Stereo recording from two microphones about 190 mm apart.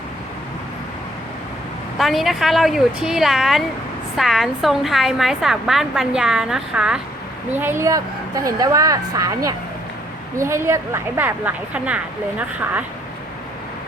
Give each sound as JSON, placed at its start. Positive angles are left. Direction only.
{"t": 2.0, "sound": "a woman's voice", "side_deg": 0}